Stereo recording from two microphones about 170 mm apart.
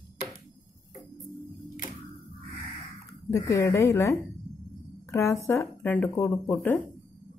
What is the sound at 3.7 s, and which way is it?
Speech, 15° left (ahead or behind).